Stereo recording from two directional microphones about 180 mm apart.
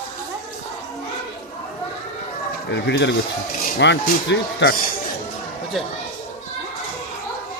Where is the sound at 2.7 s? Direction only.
75° left (ahead or behind).